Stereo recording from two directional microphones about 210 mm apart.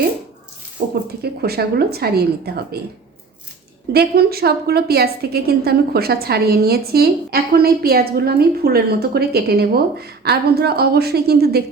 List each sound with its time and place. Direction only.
1.2 s a woman's voice: 50° right (ahead or behind)
3.9 s a woman's voice: 50° right (ahead or behind)